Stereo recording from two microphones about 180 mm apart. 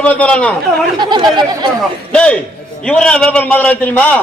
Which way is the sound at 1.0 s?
25° right (ahead or behind).